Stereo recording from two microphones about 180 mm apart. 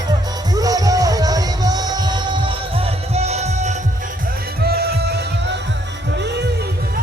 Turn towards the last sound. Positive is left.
turn(degrees=-65)  # may be behind; listen again after turning